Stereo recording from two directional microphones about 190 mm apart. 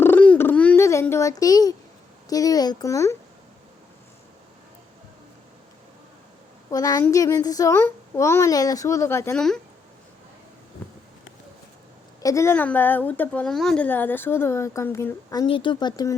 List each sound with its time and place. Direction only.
0.0 s a sound: 10° left (ahead or behind)
2.3 s a woman's voice: 20° left (ahead or behind)
6.7 s a woman's voice: 20° left (ahead or behind)
12.2 s a woman's voice: 15° left (ahead or behind)